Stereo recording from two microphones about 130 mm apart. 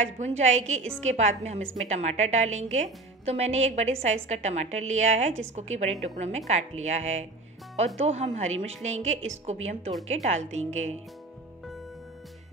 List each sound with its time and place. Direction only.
0.2 s a woman's voice: 60° right (ahead or behind)